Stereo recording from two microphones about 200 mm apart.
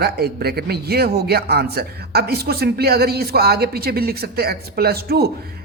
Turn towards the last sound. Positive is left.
turn(degrees=-50)  # may be behind; listen again after turning